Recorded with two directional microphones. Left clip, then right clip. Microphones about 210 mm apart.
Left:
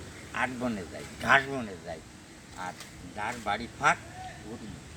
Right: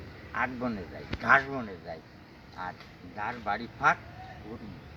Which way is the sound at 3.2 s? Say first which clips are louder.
Left 1 dB; 15° left (ahead or behind).